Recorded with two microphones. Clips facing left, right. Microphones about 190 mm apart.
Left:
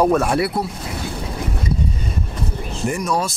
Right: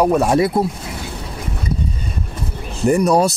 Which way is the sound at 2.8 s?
40° right (ahead or behind).